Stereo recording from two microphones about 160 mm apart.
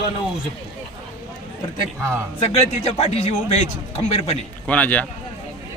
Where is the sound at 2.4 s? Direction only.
40° left (ahead or behind).